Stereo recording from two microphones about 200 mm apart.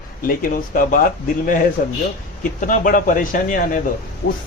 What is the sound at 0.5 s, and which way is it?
Speech, 45° left (ahead or behind).